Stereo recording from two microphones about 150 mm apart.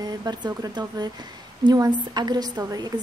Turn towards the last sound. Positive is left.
turn(degrees=-25)  # may be behind; listen again after turning